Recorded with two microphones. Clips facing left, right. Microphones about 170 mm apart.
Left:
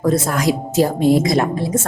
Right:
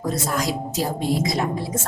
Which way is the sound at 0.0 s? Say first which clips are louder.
Left 7 dB; 60° left (ahead or behind).